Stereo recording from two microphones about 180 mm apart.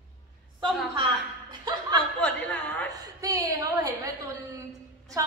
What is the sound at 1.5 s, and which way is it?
Chuckle, 20° right (ahead or behind).